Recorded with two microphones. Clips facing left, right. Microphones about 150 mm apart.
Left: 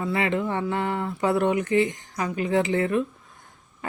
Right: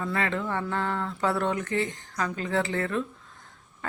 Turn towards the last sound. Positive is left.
turn(degrees=15)  # may be behind; listen again after turning